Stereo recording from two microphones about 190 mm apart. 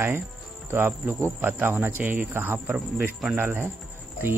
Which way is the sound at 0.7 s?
10° right (ahead or behind).